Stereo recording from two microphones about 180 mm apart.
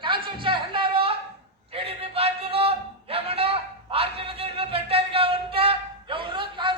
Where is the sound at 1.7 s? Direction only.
30° right (ahead or behind).